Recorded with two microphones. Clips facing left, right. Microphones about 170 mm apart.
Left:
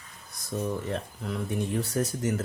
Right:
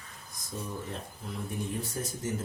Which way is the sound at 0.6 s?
75° left (ahead or behind).